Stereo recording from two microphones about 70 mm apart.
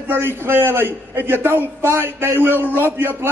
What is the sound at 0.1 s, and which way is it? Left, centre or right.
A man's voice, right.